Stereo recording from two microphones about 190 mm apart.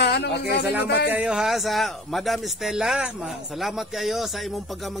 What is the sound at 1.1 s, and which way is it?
Speech, 5° right (ahead or behind).